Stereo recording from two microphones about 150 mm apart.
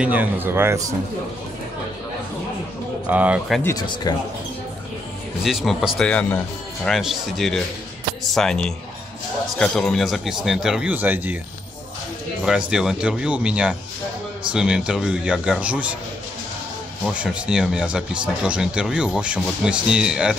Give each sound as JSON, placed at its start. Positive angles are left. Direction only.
{"t": 0.0, "sound": "speech", "side_deg": -10}
{"t": 3.1, "sound": "speech", "side_deg": -10}
{"t": 3.8, "sound": "speech", "side_deg": 30}
{"t": 5.4, "sound": "speech", "side_deg": 0}
{"t": 12.4, "sound": "speech", "side_deg": -5}
{"t": 17.0, "sound": "speech", "side_deg": -5}